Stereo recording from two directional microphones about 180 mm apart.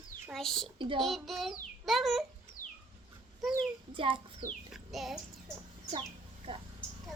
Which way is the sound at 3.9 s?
30° right (ahead or behind).